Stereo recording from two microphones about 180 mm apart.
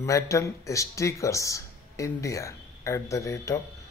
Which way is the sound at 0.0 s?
15° left (ahead or behind).